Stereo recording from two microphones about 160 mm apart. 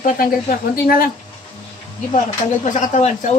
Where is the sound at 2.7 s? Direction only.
50° left (ahead or behind).